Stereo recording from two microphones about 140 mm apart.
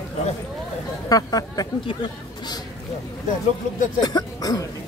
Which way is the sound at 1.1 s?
25° left (ahead or behind).